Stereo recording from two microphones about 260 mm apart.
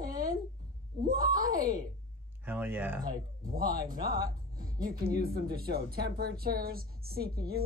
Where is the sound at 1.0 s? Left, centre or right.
Centre.